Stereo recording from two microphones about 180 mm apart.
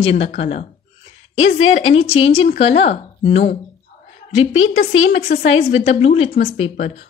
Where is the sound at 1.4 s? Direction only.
90° left.